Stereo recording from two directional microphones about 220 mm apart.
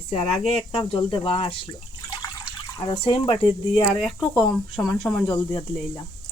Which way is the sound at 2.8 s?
25° left (ahead or behind).